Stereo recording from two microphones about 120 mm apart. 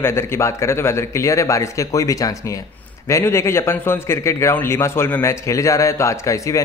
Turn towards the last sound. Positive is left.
turn(degrees=25)  # may be behind; listen again after turning